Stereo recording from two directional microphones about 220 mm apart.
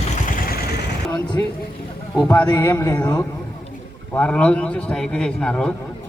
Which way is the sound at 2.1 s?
5° left (ahead or behind).